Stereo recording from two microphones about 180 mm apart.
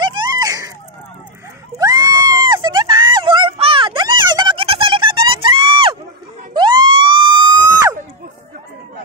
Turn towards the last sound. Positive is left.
turn(degrees=-20)  # may be behind; listen again after turning